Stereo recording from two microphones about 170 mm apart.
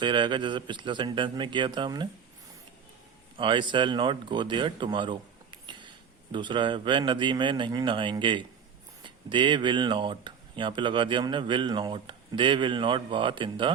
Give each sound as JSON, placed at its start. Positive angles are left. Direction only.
{"t": 0.0, "sound": "speech", "side_deg": -30}
{"t": 3.3, "sound": "speech", "side_deg": -30}